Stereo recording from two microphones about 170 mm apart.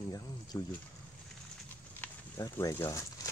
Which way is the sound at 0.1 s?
20° left (ahead or behind).